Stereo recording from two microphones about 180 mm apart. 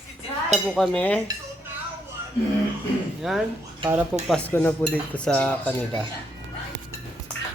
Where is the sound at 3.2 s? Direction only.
Centre (ahead or behind).